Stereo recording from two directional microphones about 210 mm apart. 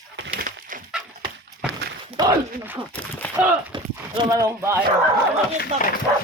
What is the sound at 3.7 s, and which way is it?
Speech, 20° right (ahead or behind).